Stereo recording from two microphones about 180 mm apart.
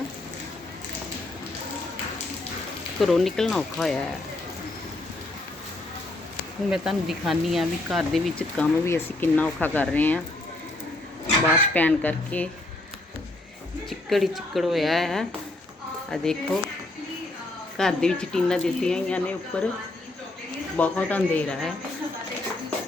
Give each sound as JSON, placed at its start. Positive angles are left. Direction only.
{"t": 3.0, "sound": "speech", "side_deg": 0}
{"t": 6.7, "sound": "speech", "side_deg": 0}
{"t": 11.5, "sound": "speech", "side_deg": 10}
{"t": 14.1, "sound": "speech", "side_deg": 0}
{"t": 17.7, "sound": "speech", "side_deg": 5}
{"t": 20.7, "sound": "speech", "side_deg": 10}